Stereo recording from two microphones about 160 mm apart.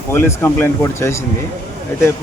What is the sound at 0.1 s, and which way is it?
Speech, 15° left (ahead or behind).